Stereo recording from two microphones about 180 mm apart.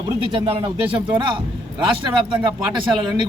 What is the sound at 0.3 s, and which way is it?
Speech, 30° right (ahead or behind).